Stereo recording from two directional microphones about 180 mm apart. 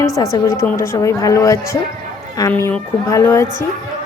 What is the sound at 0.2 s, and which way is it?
A woman's voice, 15° left (ahead or behind).